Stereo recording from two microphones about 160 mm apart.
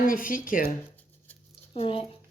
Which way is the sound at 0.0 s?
60° left (ahead or behind).